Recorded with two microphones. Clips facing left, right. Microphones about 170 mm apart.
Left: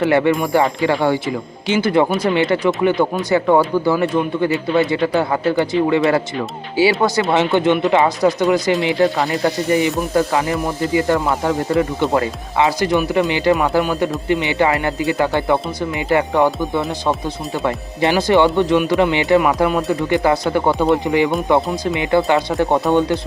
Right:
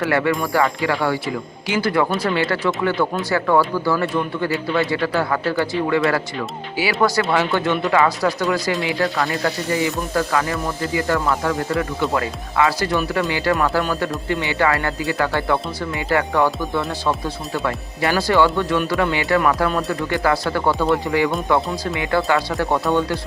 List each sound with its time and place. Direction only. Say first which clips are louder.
0.0 s speech: left 4 dB; 20° left (ahead or behind)